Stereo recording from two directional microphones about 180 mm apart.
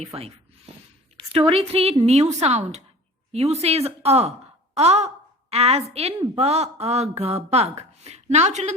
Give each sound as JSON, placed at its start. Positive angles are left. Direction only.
{"t": 0.0, "sound": "a woman's voice", "side_deg": -35}